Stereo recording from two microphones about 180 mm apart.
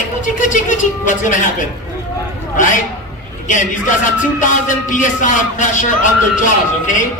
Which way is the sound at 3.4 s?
45° left (ahead or behind).